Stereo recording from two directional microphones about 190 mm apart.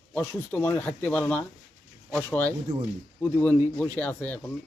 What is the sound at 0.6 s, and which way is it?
Speech, 10° left (ahead or behind).